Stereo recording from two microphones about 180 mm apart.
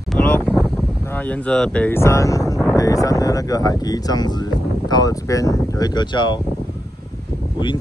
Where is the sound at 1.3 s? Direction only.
5° left (ahead or behind); by 6.4 s 25° left (ahead or behind).